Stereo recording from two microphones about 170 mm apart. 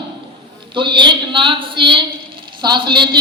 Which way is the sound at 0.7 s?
30° right (ahead or behind).